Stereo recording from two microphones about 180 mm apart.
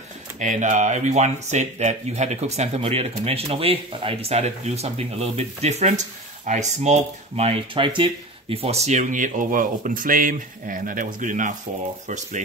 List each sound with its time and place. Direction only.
0.4 s speech: 45° right (ahead or behind)